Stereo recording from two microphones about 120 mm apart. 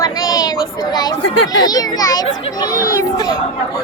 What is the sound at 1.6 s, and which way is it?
Speech, 30° left (ahead or behind).